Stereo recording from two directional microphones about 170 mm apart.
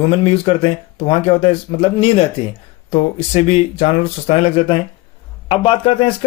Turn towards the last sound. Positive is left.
turn(degrees=30)  # may be behind; listen again after turning